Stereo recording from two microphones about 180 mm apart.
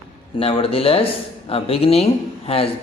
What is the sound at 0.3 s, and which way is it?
Speech, 30° left (ahead or behind).